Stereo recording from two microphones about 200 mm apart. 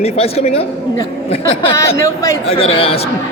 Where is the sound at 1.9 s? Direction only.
15° left (ahead or behind).